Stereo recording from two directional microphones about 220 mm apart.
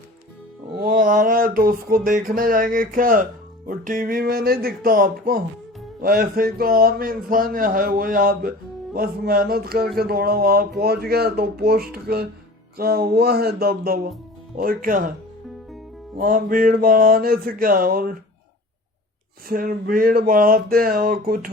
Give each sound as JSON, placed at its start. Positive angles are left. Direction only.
{"t": 0.8, "sound": "a sound", "side_deg": -40}
{"t": 3.7, "sound": "speech", "side_deg": -40}
{"t": 16.1, "sound": "speech", "side_deg": -40}
{"t": 19.5, "sound": "speech", "side_deg": -40}